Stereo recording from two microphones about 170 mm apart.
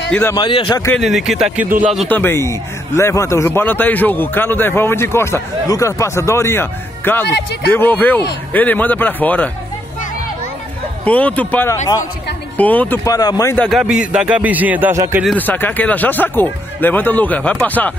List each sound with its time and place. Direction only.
0.1 s a man's voice: 15° left (ahead or behind)
0.4 s speech: 30° left (ahead or behind)
0.9 s a man's voice: centre (ahead or behind)
2.0 s a man's voice: 10° left (ahead or behind)
11.1 s a man's voice: 10° left (ahead or behind)
13.0 s speech: 20° left (ahead or behind)
13.7 s a man's voice: 5° right (ahead or behind)
15.3 s a man's voice: 10° left (ahead or behind)